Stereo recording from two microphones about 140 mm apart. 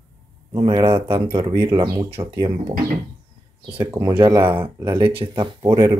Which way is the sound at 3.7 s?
10° right (ahead or behind).